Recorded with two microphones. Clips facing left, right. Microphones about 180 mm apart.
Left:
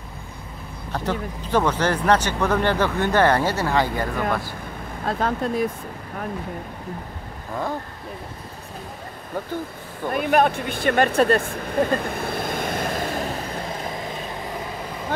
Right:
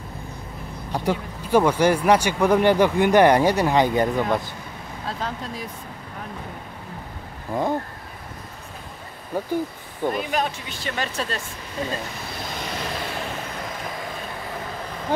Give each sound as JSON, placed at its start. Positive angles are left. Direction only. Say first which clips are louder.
{"t": 0.9, "sound": "speech", "louder": "right 1 dB", "side_deg": -10}
{"t": 5.0, "sound": "speech", "louder": "left 7 dB", "side_deg": 55}
{"t": 9.3, "sound": "speech", "louder": "right 2 dB", "side_deg": -10}
{"t": 10.1, "sound": "speech", "louder": "left 6 dB", "side_deg": 55}